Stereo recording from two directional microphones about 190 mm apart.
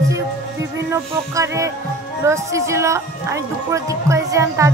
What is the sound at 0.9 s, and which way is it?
Speech, 15° right (ahead or behind).